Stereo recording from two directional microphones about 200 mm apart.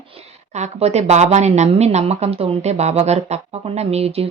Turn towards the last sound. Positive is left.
turn(degrees=-30)  # may be behind; listen again after turning